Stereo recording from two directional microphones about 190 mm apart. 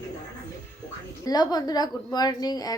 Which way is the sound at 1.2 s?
20° left (ahead or behind).